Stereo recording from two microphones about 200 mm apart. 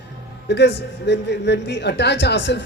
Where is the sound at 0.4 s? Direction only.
60° left (ahead or behind).